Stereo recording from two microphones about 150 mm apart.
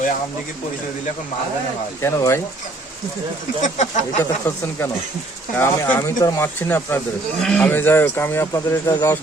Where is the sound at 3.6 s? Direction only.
55° left (ahead or behind).